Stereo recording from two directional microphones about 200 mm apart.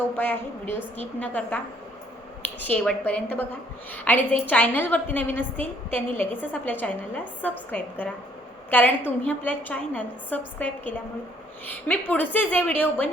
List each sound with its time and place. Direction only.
0.2 s a woman's voice: 10° left (ahead or behind)